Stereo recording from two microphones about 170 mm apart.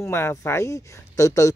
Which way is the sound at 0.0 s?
15° left (ahead or behind).